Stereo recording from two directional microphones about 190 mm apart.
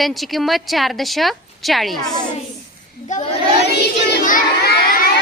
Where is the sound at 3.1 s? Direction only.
40° left (ahead or behind).